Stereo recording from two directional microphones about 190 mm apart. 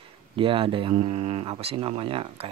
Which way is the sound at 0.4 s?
25° right (ahead or behind).